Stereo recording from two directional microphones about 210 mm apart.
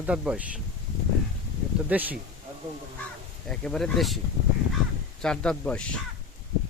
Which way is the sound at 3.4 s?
Centre (ahead or behind).